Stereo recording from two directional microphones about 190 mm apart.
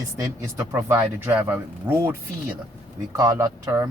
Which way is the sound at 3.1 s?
20° right (ahead or behind).